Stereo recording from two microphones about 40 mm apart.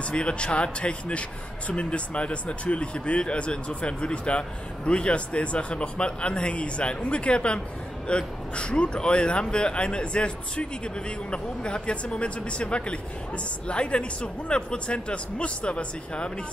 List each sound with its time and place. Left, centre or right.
0.0 s speech: left